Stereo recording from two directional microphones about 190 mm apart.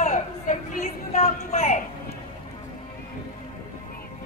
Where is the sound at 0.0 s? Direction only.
40° left (ahead or behind).